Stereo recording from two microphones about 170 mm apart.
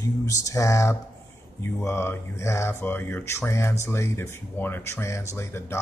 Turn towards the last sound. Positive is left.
turn(degrees=15)  # may be behind; listen again after turning